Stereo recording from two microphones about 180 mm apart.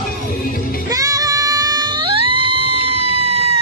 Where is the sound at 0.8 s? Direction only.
20° right (ahead or behind).